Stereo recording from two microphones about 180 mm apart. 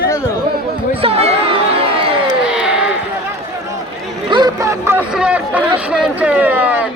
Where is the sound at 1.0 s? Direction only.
35° right (ahead or behind).